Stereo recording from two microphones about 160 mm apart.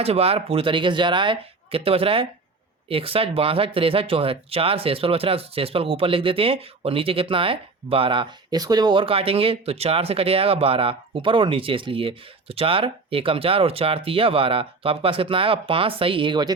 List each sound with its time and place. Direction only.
0.0 s speech: 40° right (ahead or behind)